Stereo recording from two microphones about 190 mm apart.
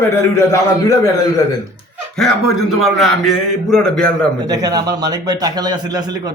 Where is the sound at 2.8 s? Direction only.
Centre (ahead or behind).